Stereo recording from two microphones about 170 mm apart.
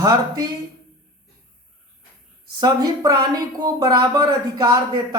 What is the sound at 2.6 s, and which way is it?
Speech, 25° right (ahead or behind).